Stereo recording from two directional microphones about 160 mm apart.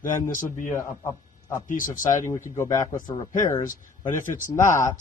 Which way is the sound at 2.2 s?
20° left (ahead or behind).